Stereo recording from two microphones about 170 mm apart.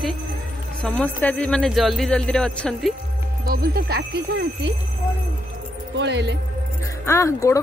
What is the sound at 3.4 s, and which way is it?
Speech, 65° right (ahead or behind).